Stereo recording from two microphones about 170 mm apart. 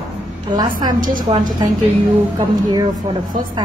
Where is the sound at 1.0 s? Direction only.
50° right (ahead or behind).